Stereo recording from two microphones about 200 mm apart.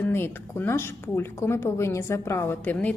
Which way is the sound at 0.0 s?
10° left (ahead or behind).